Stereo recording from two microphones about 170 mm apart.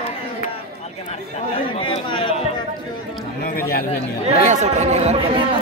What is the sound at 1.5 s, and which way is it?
Chatter, 30° left (ahead or behind).